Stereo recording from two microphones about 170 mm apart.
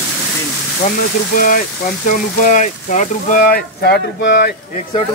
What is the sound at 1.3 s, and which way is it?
Speech, 55° left (ahead or behind).